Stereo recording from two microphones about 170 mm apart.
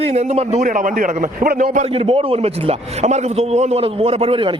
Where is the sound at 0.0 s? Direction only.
40° right (ahead or behind).